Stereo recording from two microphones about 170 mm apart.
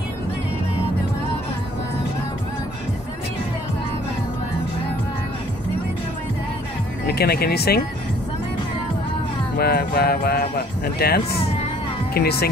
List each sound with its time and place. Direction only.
7.1 s speech: 70° left (ahead or behind)
9.6 s music: 65° left (ahead or behind)
12.1 s speech: 70° left (ahead or behind)